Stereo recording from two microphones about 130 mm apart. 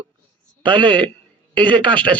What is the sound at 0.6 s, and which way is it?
Speech, 40° right (ahead or behind).